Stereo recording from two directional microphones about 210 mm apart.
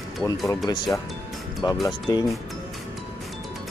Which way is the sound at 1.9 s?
20° left (ahead or behind).